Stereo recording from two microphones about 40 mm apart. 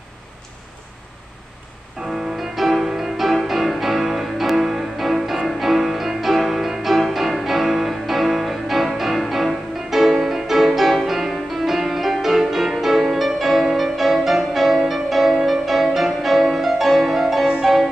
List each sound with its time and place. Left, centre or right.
2.0 s music: centre